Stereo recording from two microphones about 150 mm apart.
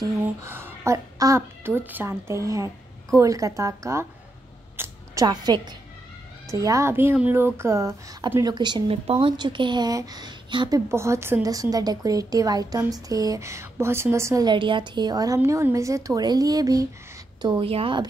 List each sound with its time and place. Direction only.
0.0 s a woman's voice: 15° right (ahead or behind)
4.7 s a sound: 20° right (ahead or behind)
6.5 s a woman's voice: 25° right (ahead or behind)
10.9 s a woman's voice: 15° right (ahead or behind); by 18.0 s 35° right (ahead or behind)